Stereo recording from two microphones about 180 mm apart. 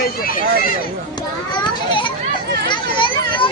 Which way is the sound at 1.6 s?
25° left (ahead or behind).